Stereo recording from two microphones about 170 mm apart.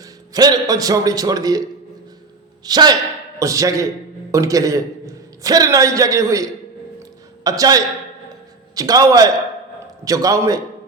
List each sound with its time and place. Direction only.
0.0 s a man's voice: 20° right (ahead or behind)
2.6 s a man's voice: 25° right (ahead or behind)